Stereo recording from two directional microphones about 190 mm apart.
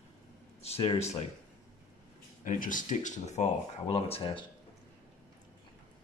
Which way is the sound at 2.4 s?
45° left (ahead or behind).